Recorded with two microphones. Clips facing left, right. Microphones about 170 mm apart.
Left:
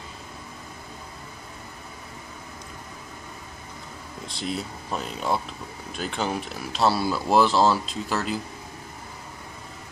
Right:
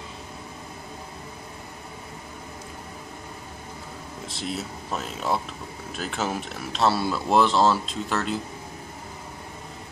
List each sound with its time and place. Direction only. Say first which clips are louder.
4.3 s speech: left 1 dB; centre (ahead or behind)